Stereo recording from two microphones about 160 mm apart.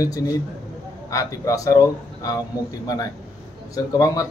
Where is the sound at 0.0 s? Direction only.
20° left (ahead or behind).